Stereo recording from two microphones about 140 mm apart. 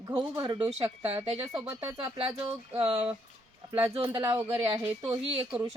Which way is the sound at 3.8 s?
35° right (ahead or behind).